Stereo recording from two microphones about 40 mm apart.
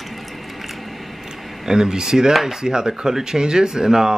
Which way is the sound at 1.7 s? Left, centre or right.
Centre.